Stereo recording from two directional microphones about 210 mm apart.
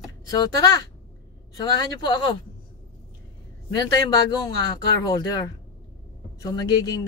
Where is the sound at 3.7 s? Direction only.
20° left (ahead or behind).